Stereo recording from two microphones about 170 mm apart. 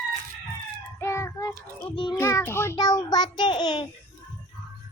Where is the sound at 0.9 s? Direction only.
15° left (ahead or behind).